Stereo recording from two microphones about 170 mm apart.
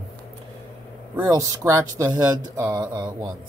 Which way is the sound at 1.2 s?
20° right (ahead or behind).